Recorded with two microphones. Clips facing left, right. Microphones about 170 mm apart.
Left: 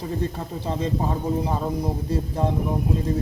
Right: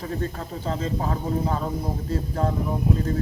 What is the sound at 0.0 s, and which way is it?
Speech, 15° left (ahead or behind).